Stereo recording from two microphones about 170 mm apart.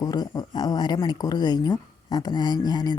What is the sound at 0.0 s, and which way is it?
A woman's voice, 20° left (ahead or behind).